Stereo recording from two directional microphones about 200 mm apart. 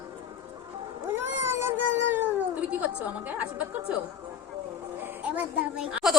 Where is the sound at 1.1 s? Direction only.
10° right (ahead or behind).